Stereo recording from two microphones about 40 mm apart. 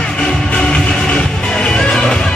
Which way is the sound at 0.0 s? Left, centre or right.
Left.